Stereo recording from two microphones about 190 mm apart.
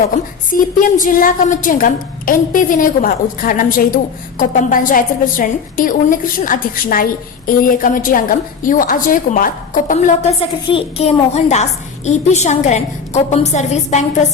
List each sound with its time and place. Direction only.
0.8 s a woman's voice: 45° left (ahead or behind)
10.7 s a child's voice: 30° left (ahead or behind)